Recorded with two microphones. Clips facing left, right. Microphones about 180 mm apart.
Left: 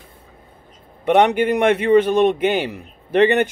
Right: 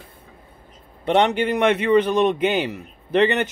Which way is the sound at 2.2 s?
50° left (ahead or behind).